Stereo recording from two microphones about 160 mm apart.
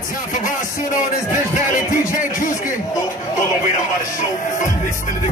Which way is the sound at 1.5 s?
55° left (ahead or behind).